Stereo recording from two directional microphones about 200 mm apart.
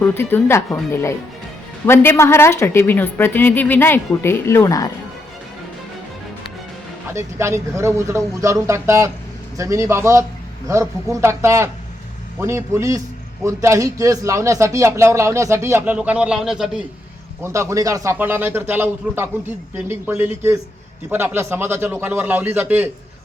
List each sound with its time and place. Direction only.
0.0 s a woman's voice: 10° left (ahead or behind)
7.1 s a man's voice: 15° right (ahead or behind)
17.4 s a man's voice: 15° right (ahead or behind)